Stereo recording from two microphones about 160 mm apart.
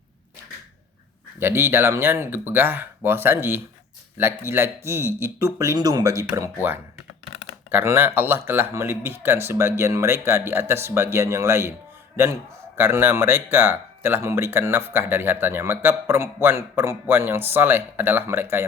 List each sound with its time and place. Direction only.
1.4 s a man's voice: 15° right (ahead or behind)